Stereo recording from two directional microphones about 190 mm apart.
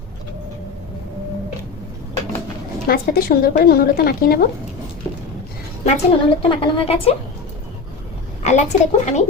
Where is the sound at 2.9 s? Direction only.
50° left (ahead or behind).